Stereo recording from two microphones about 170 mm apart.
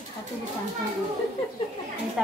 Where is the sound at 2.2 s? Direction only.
Centre (ahead or behind).